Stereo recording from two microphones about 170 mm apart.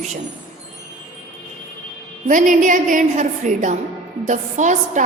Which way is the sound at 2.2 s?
50° right (ahead or behind).